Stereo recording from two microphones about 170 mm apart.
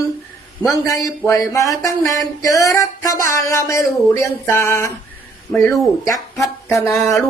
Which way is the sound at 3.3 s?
15° left (ahead or behind).